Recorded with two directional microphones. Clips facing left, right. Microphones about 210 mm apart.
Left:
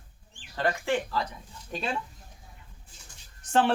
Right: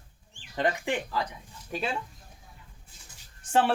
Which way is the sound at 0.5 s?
15° right (ahead or behind).